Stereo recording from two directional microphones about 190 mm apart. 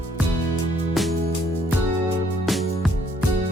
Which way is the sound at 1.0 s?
Centre (ahead or behind).